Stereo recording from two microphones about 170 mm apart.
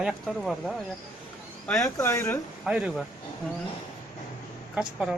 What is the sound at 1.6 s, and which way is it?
Speech, 15° left (ahead or behind).